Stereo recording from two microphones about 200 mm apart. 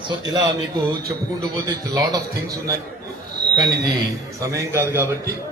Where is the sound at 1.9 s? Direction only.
20° right (ahead or behind).